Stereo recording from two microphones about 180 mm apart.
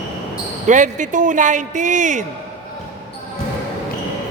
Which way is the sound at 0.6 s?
45° right (ahead or behind).